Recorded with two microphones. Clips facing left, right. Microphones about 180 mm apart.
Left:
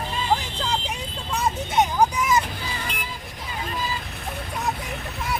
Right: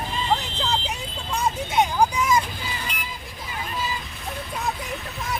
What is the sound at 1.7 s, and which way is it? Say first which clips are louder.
Vehicle: even; 10° right (ahead or behind).